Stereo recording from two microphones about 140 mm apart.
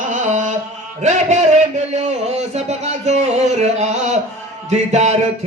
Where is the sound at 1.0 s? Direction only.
60° right (ahead or behind).